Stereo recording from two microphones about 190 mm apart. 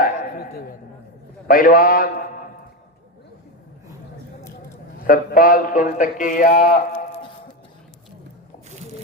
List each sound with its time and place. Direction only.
0.0 s a man's voice: 50° left (ahead or behind)
5.0 s speech: 45° left (ahead or behind)